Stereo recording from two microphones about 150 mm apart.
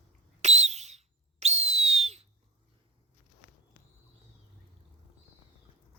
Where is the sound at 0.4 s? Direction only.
50° right (ahead or behind).